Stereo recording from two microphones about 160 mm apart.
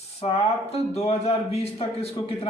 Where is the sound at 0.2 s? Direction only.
40° left (ahead or behind).